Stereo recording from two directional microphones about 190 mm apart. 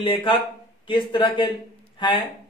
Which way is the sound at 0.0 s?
25° left (ahead or behind).